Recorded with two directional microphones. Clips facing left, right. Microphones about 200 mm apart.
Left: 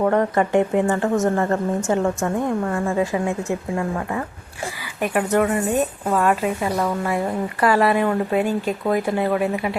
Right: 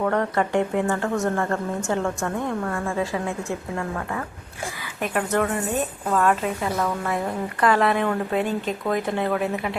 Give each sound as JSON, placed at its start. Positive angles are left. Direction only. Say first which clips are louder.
{"t": 0.0, "sound": "a woman's voice", "louder": "left 4 dB", "side_deg": 20}